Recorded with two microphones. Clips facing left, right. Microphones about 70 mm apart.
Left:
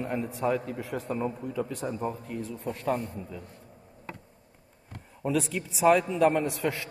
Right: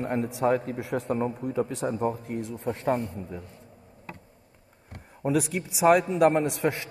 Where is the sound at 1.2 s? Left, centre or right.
Right.